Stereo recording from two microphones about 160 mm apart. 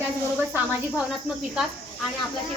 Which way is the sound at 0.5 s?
10° right (ahead or behind).